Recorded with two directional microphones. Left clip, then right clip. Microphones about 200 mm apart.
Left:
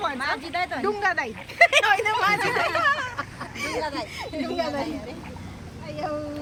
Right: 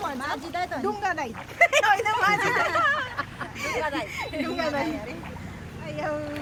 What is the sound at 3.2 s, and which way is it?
Vehicle, 35° left (ahead or behind).